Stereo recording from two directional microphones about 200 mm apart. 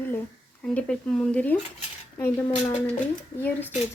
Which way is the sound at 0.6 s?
5° left (ahead or behind).